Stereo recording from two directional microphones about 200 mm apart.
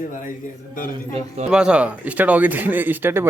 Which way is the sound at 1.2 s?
35° right (ahead or behind).